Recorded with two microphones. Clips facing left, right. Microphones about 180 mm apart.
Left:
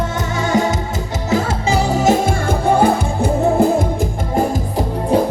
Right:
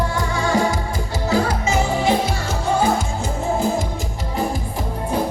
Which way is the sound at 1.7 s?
40° left (ahead or behind).